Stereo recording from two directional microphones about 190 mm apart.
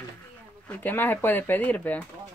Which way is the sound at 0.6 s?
10° left (ahead or behind).